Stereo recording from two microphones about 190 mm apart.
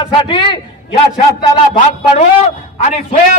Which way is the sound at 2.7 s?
35° left (ahead or behind).